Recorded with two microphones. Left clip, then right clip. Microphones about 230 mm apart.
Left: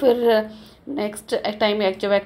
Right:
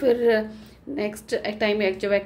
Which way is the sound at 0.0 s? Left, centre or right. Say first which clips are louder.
Left 3 dB; centre.